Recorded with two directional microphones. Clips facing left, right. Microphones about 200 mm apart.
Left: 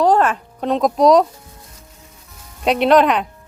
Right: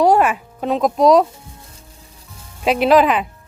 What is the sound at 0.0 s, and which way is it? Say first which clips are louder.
Speech: right 1 dB; 10° right (ahead or behind).